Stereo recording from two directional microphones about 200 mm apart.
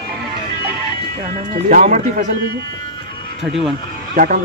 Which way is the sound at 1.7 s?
40° right (ahead or behind).